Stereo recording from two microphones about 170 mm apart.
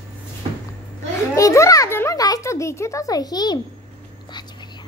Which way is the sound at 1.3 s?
20° left (ahead or behind).